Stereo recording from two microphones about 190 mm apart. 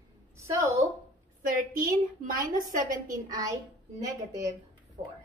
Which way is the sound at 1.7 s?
50° right (ahead or behind).